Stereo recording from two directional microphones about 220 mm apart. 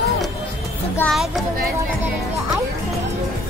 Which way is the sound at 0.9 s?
Centre (ahead or behind).